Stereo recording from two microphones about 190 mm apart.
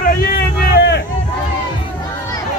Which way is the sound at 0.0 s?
50° left (ahead or behind).